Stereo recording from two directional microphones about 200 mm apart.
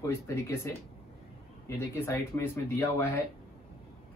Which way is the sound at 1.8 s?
15° left (ahead or behind).